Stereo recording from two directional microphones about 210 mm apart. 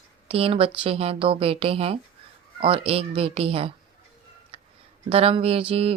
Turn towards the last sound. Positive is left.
turn(degrees=-25)  # may be behind; listen again after turning